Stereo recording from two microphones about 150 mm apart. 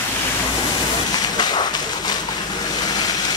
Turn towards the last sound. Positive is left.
turn(degrees=30)  # may be behind; listen again after turning